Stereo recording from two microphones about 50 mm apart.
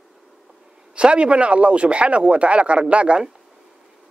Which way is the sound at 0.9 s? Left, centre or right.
Right.